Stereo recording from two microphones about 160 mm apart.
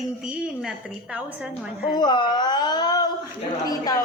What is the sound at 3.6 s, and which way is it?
Speech, 20° left (ahead or behind).